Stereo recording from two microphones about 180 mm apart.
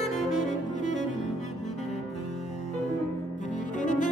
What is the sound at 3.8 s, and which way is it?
Music, 45° left (ahead or behind).